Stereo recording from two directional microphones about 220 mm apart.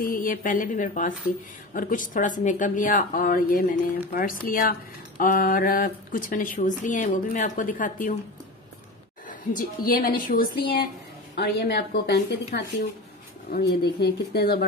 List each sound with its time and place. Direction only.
0.0 s speech: 40° left (ahead or behind)
9.6 s speech: 40° left (ahead or behind)